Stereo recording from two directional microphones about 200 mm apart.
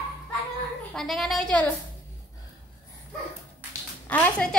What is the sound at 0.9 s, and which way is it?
Speech, centre (ahead or behind).